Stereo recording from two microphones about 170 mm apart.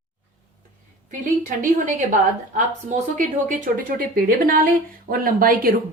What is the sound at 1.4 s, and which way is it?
A woman's voice, 50° right (ahead or behind).